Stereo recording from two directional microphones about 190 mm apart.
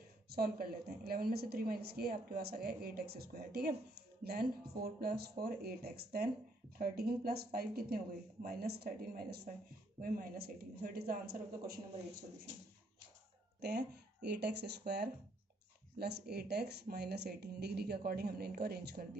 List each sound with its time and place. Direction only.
0.3 s a woman's voice: 50° right (ahead or behind)
13.6 s speech: 60° right (ahead or behind)